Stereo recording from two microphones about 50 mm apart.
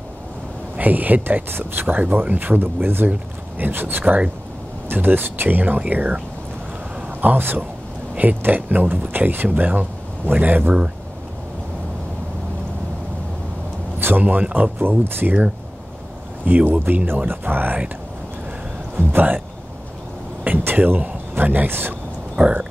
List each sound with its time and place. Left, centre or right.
0.7 s speech: right
4.0 s speech: right
4.8 s speech: right
7.2 s speech: right
13.9 s a sound: right
14.5 s speech: right
16.4 s speech: right
18.9 s speech: right
20.4 s a sound: right
22.3 s speech: right